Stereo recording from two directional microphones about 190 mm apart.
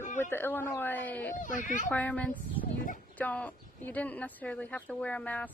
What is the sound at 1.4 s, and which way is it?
Speech, 45° left (ahead or behind).